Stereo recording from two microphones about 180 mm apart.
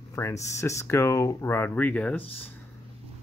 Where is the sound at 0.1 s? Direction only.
15° left (ahead or behind).